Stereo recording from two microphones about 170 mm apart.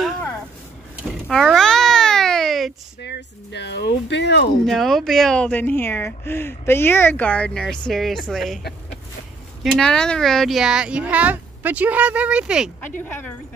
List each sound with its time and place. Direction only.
1.3 s babbling: centre (ahead or behind)
3.0 s speech: 90° left
4.6 s speech: centre (ahead or behind)
9.6 s speech: centre (ahead or behind)
13.0 s speech: 10° left (ahead or behind)